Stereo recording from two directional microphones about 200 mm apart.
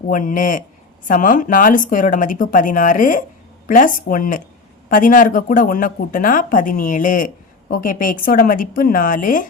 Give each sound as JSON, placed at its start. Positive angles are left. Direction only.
{"t": 0.1, "sound": "speech", "side_deg": 40}